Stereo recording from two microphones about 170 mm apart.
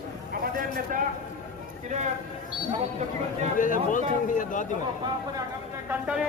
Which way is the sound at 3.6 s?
50° left (ahead or behind).